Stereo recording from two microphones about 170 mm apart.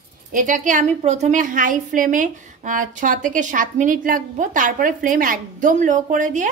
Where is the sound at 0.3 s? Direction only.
50° right (ahead or behind).